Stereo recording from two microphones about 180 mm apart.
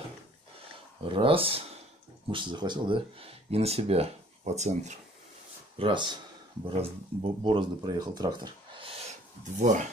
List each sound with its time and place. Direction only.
1.0 s speech: 30° right (ahead or behind)
5.8 s speech: 25° right (ahead or behind)
9.4 s speech: 45° right (ahead or behind)